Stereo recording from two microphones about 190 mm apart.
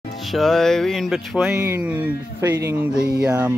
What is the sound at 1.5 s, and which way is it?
Speech, 15° right (ahead or behind).